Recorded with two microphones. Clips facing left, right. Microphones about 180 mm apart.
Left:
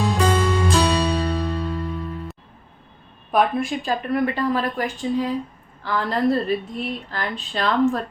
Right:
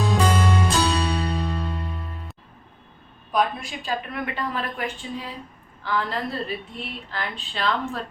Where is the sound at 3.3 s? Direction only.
50° left (ahead or behind).